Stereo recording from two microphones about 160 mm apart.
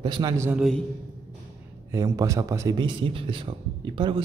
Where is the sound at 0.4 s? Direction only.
10° right (ahead or behind).